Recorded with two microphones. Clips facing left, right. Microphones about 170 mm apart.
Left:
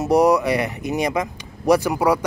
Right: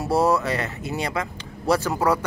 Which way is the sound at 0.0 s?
15° left (ahead or behind).